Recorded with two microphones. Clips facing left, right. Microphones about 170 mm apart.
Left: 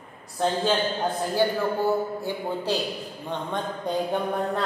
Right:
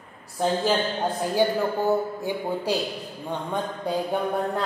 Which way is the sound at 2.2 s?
15° right (ahead or behind).